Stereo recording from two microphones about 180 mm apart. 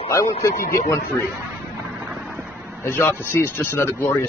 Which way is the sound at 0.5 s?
45° left (ahead or behind).